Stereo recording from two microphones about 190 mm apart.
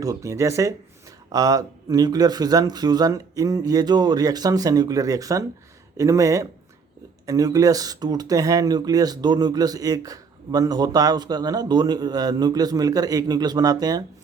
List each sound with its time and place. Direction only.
0.0 s speech: 15° right (ahead or behind)